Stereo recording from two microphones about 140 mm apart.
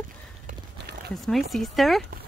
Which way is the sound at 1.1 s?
Centre (ahead or behind).